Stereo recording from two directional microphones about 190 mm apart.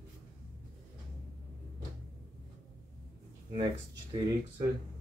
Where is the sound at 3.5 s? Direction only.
25° right (ahead or behind).